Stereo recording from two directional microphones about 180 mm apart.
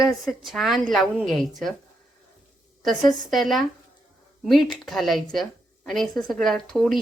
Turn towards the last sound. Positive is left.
turn(degrees=0)  # may be behind; listen again after turning